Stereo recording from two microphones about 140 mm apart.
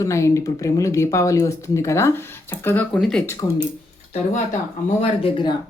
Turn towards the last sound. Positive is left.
turn(degrees=40)  # may be behind; listen again after turning